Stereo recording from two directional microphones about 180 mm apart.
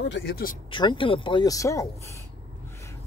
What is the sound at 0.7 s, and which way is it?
Speech, 25° left (ahead or behind).